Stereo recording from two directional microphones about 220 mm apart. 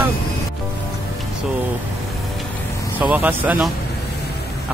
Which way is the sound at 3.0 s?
5° right (ahead or behind).